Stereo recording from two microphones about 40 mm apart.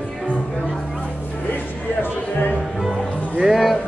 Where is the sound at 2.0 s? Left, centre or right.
Left.